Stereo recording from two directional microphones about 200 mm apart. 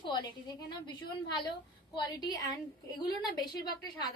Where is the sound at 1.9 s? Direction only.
20° left (ahead or behind).